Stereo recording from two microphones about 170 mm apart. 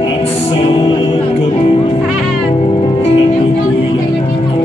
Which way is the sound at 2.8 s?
35° left (ahead or behind).